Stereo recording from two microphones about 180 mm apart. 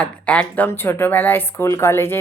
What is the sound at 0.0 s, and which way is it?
Speech, 10° left (ahead or behind).